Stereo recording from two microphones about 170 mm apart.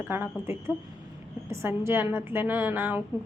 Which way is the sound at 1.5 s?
15° right (ahead or behind).